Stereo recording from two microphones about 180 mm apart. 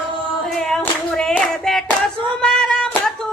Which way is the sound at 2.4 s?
5° left (ahead or behind).